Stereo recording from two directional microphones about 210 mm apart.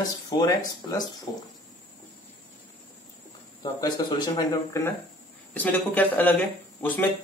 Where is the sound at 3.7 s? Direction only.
20° left (ahead or behind).